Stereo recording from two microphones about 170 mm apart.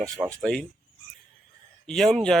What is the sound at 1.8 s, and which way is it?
Speech, centre (ahead or behind).